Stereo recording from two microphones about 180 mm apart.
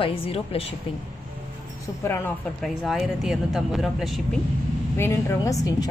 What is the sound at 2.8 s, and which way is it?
Speech, centre (ahead or behind).